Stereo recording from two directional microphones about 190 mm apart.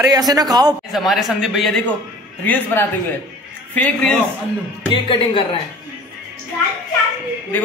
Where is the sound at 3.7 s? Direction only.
5° left (ahead or behind).